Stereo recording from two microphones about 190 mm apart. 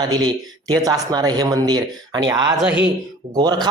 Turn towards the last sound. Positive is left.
turn(degrees=-20)  # may be behind; listen again after turning